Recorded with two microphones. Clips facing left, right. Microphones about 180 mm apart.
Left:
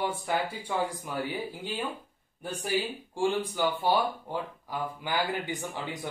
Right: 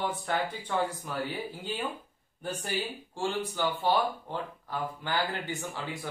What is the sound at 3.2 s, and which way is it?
Speech, 10° left (ahead or behind).